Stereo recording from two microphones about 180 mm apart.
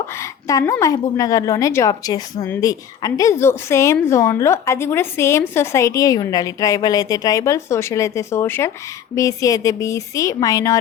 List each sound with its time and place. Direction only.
0.2 s a woman's voice: 15° left (ahead or behind)